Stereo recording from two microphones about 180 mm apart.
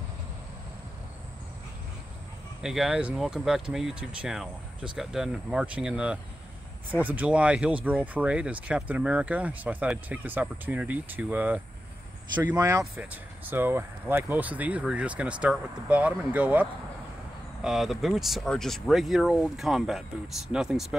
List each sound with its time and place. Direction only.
2.6 s speech: centre (ahead or behind); by 12.8 s 20° right (ahead or behind)
12.9 s speech: 10° right (ahead or behind)
17.6 s speech: centre (ahead or behind)